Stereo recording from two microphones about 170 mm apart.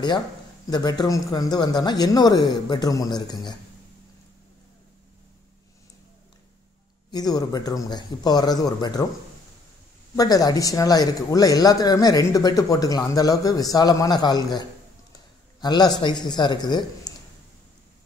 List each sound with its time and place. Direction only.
0.7 s speech: 25° left (ahead or behind)
7.1 s speech: 25° left (ahead or behind)
10.1 s speech: 20° left (ahead or behind)